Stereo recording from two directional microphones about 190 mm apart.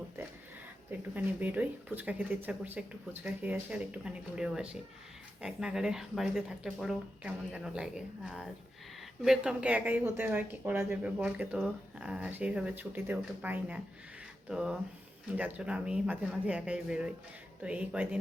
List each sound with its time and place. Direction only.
0.9 s speech: 10° right (ahead or behind)